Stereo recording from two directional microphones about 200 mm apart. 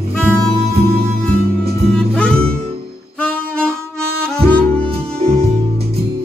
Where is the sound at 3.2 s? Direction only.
5° left (ahead or behind).